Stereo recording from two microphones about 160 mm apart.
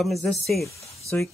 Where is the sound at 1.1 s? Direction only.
10° left (ahead or behind).